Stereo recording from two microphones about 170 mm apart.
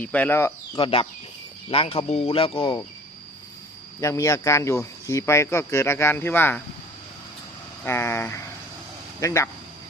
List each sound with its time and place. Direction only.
0.0 s speech: 10° left (ahead or behind)
0.8 s speech: 35° left (ahead or behind)
4.0 s speech: 15° left (ahead or behind)
7.9 s speech: 15° left (ahead or behind)